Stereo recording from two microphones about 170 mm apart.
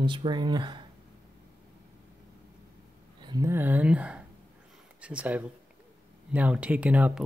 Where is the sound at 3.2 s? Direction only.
25° right (ahead or behind).